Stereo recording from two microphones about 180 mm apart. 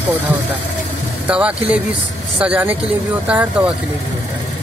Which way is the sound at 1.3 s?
5° right (ahead or behind).